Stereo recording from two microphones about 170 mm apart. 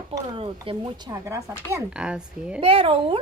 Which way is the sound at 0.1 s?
30° right (ahead or behind).